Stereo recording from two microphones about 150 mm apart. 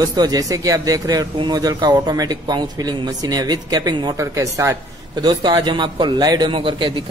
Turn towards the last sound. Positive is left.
turn(degrees=-30)  # may be behind; listen again after turning